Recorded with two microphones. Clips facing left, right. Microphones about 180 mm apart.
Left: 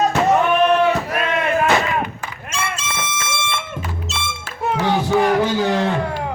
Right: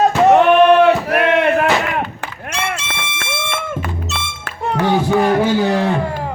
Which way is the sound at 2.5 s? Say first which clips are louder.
Right 3 dB; 65° right (ahead or behind).